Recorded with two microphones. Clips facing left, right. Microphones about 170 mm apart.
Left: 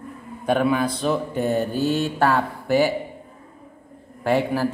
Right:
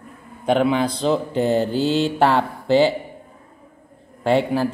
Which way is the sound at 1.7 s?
90° right.